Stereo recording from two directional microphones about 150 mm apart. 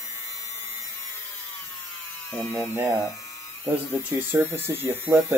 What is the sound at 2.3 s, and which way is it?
Speech, 10° left (ahead or behind).